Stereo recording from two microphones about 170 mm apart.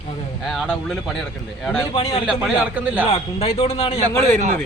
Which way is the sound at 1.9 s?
35° left (ahead or behind).